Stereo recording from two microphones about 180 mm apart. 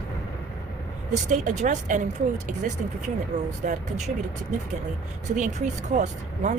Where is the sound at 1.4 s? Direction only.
40° right (ahead or behind).